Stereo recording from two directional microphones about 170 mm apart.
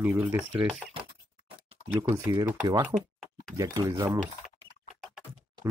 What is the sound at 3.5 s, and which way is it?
Speech, 20° right (ahead or behind).